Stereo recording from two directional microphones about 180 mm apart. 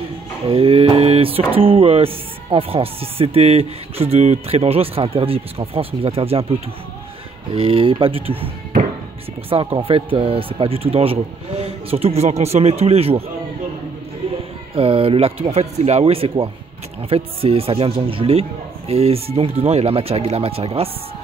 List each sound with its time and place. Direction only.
0.5 s music: 30° right (ahead or behind)
9.5 s music: 30° right (ahead or behind)
14.8 s music: 30° right (ahead or behind)